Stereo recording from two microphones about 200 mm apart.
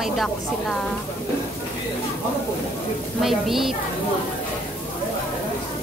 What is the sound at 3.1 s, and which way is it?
Speech, centre (ahead or behind).